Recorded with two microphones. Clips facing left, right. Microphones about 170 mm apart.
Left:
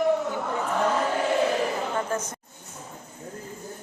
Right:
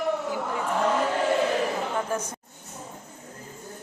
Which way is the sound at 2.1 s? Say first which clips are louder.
Even; 15° right (ahead or behind).